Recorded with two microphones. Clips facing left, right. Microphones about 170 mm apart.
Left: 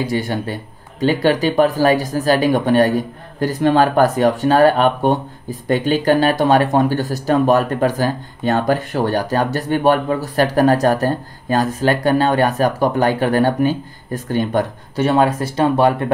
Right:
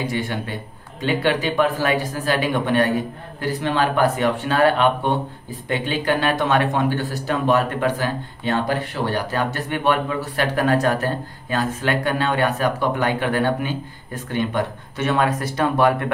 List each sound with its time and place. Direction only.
0.0 s speech: 35° left (ahead or behind)